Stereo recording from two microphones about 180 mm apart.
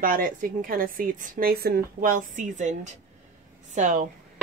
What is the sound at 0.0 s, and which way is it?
A woman's voice, 50° right (ahead or behind).